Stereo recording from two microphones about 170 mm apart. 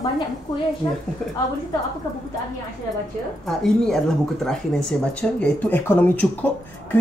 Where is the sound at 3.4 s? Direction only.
5° left (ahead or behind).